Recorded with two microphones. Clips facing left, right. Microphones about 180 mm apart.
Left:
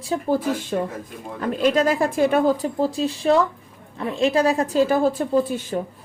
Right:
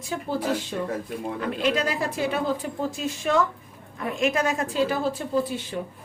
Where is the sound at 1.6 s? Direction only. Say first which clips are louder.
Left 7 dB; 45° left (ahead or behind).